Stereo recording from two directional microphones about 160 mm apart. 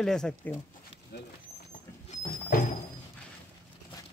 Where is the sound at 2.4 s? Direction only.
55° left (ahead or behind).